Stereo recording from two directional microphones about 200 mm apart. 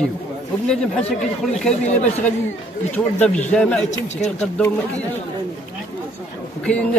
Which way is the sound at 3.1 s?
5° left (ahead or behind).